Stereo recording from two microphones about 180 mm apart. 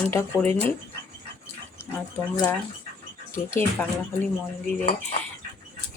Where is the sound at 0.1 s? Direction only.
15° left (ahead or behind).